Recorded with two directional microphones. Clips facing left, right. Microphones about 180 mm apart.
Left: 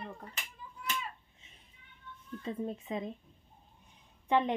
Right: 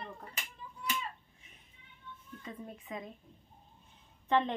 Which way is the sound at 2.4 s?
25° left (ahead or behind).